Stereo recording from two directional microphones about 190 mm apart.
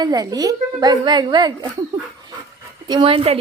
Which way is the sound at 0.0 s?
20° right (ahead or behind).